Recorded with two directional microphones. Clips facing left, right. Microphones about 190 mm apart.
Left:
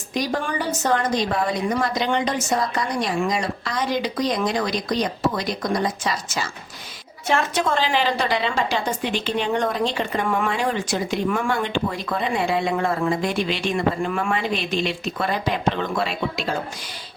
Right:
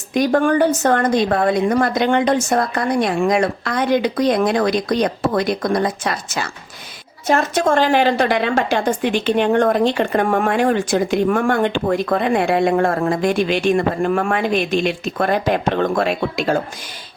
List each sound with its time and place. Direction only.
0.1 s a woman's voice: 55° right (ahead or behind)
7.3 s a woman's voice: 45° right (ahead or behind)